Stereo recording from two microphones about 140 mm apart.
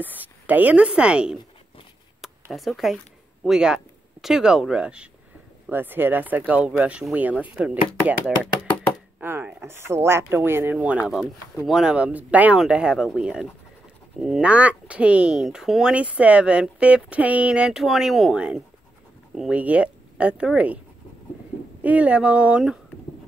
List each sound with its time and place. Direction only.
0.0 s a woman's voice: 10° right (ahead or behind)
2.5 s speech: centre (ahead or behind)
9.2 s speech: 15° right (ahead or behind)
21.8 s speech: 10° right (ahead or behind)